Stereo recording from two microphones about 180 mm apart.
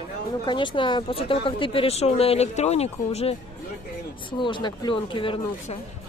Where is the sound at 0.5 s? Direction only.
25° left (ahead or behind).